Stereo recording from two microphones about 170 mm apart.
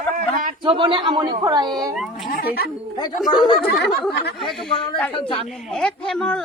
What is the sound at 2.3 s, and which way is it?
Speech, 60° left (ahead or behind).